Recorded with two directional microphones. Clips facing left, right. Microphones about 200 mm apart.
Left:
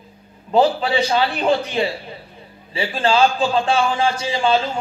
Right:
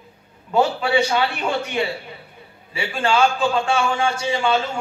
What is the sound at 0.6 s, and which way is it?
A man's voice, 35° left (ahead or behind).